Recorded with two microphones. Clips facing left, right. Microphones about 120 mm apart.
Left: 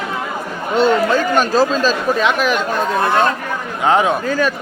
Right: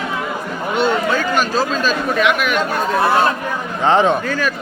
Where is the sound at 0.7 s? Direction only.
35° left (ahead or behind).